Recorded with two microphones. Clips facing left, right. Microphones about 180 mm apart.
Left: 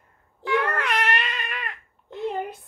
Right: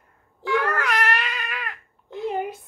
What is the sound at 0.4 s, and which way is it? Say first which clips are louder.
Crying: right 1 dB; centre (ahead or behind).